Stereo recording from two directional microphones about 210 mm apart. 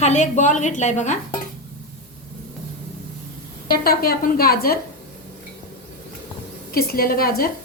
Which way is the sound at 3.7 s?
45° left (ahead or behind).